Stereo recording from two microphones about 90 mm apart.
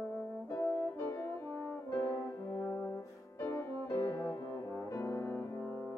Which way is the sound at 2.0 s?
40° left (ahead or behind).